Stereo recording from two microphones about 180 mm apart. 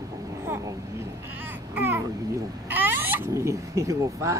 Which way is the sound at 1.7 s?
15° right (ahead or behind).